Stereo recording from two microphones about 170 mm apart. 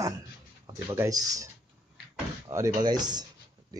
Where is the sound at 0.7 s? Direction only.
20° right (ahead or behind).